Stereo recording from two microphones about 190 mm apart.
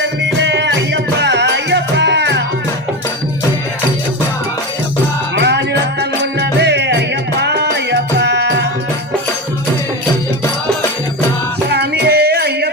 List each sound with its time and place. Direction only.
0.2 s music: 70° right (ahead or behind)
5.4 s music: 65° right (ahead or behind)
11.7 s music: 60° right (ahead or behind)